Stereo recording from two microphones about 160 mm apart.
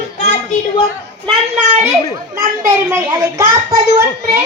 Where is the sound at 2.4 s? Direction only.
20° right (ahead or behind).